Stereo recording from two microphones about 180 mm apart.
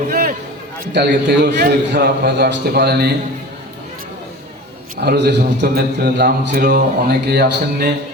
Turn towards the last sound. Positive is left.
turn(degrees=-60)  # may be behind; listen again after turning